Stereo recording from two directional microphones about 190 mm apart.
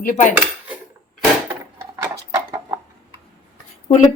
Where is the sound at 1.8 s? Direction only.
15° right (ahead or behind).